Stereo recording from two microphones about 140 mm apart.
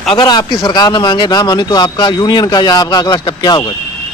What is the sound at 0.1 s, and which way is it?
Speech, 30° left (ahead or behind).